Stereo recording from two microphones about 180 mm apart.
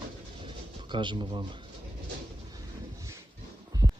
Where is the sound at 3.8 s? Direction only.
25° right (ahead or behind).